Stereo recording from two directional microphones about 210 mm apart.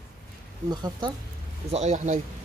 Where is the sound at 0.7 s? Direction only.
20° right (ahead or behind).